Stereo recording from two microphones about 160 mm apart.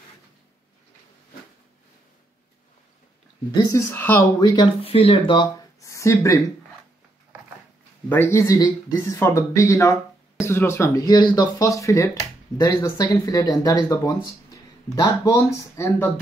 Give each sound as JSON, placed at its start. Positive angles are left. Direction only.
{"t": 3.5, "sound": "speech", "side_deg": 20}
{"t": 5.8, "sound": "a sound", "side_deg": 20}
{"t": 8.1, "sound": "speech", "side_deg": 15}